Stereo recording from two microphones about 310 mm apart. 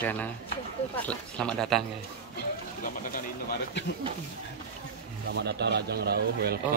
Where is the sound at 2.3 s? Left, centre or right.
Left.